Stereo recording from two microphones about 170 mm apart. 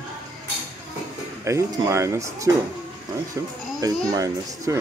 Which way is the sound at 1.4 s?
15° right (ahead or behind).